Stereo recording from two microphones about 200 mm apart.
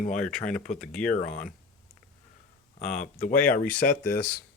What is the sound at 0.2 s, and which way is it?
Speech, 5° left (ahead or behind).